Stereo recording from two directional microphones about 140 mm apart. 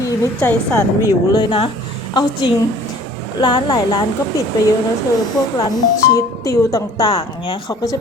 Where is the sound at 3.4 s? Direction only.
30° left (ahead or behind).